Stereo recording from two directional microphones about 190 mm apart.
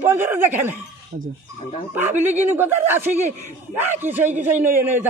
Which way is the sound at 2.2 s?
10° right (ahead or behind).